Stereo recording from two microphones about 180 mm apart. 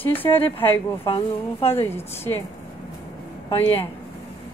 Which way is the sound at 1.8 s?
15° left (ahead or behind).